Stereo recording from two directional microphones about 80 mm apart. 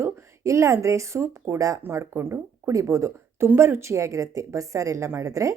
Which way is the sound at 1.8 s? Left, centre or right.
Right.